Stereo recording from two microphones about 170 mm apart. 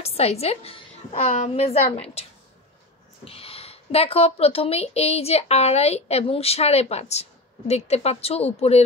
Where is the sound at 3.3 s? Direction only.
35° left (ahead or behind).